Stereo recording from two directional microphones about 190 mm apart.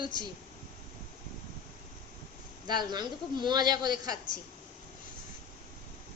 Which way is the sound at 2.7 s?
20° right (ahead or behind).